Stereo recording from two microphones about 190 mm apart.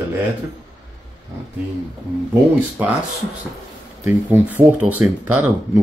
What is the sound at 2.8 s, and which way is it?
Speech, 10° right (ahead or behind).